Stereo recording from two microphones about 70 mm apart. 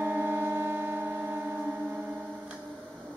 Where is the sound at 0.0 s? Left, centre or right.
Right.